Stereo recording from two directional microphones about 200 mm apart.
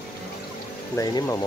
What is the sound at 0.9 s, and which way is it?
Speech, 15° left (ahead or behind).